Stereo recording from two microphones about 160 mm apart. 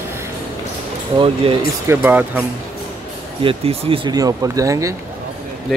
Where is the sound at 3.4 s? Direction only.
35° right (ahead or behind).